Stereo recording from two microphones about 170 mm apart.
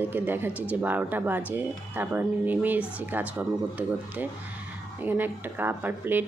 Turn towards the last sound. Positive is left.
turn(degrees=-10)  # may be behind; listen again after turning